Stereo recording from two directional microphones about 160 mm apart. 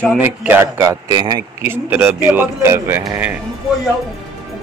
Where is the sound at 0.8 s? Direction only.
25° right (ahead or behind).